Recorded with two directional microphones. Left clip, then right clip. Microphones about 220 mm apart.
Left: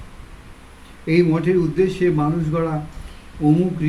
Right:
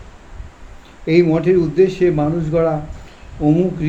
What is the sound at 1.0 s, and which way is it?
Speech, 15° left (ahead or behind).